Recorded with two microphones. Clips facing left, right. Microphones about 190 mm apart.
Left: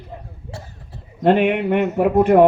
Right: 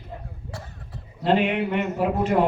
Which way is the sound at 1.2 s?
55° left (ahead or behind).